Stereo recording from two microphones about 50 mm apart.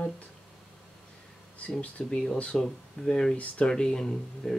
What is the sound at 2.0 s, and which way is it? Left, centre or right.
Speech, centre.